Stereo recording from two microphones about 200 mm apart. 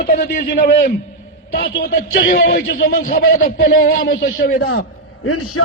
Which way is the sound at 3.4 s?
45° left (ahead or behind).